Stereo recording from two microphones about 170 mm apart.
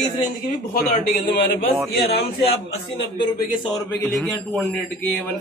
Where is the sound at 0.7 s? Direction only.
60° left (ahead or behind).